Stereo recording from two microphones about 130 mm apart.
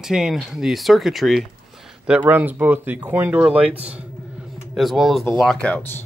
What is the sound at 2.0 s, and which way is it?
Speech, 10° right (ahead or behind).